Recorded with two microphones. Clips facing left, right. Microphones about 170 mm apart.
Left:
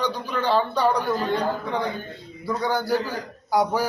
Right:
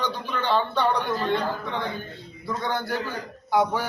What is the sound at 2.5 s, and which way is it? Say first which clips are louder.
Speech: left 4 dB; 5° left (ahead or behind).